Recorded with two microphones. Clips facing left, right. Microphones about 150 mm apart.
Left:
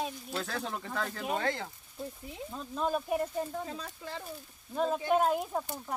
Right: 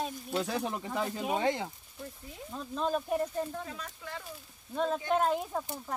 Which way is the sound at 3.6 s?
30° left (ahead or behind).